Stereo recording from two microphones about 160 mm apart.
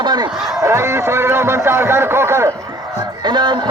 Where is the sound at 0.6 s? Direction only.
15° right (ahead or behind).